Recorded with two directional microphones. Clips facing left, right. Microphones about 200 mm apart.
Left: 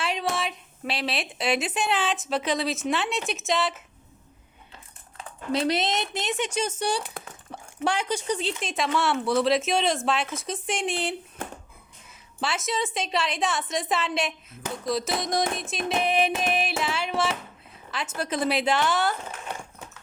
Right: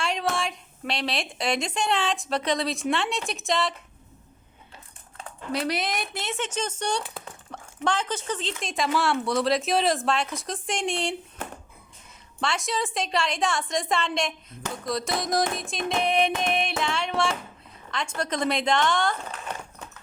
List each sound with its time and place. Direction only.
0.0 s a woman's voice: centre (ahead or behind)
5.5 s speech: 25° left (ahead or behind); by 11.1 s 5° left (ahead or behind)
12.4 s speech: 5° left (ahead or behind)